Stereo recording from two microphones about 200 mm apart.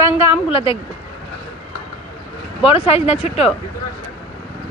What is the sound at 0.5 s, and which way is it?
Speech, 25° left (ahead or behind).